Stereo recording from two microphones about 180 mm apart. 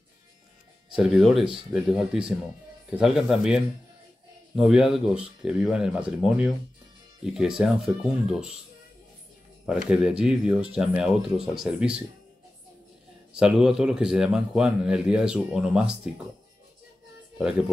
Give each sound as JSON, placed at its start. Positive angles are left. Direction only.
{"t": 0.9, "sound": "a man's voice", "side_deg": 0}
{"t": 9.7, "sound": "a man's voice", "side_deg": -5}
{"t": 13.3, "sound": "a man's voice", "side_deg": -5}
{"t": 17.4, "sound": "a man's voice", "side_deg": -5}